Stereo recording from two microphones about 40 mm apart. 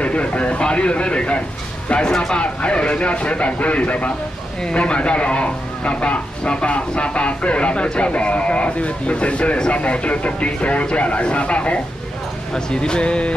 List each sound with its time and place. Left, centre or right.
0.0 s speech: left
12.5 s speech: left